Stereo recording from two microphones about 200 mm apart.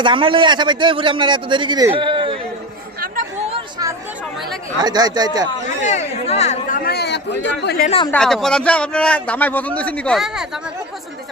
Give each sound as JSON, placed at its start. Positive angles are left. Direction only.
{"t": 0.0, "sound": "a man's voice", "side_deg": -25}
{"t": 3.5, "sound": "chatter", "side_deg": -20}
{"t": 4.8, "sound": "a man's voice", "side_deg": -20}
{"t": 5.8, "sound": "speech", "side_deg": 35}
{"t": 6.7, "sound": "a sound", "side_deg": 50}
{"t": 7.6, "sound": "speech", "side_deg": 55}
{"t": 7.9, "sound": "speech", "side_deg": 25}
{"t": 8.1, "sound": "a man's voice", "side_deg": 5}